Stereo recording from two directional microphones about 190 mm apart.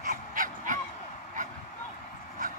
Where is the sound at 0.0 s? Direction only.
45° right (ahead or behind).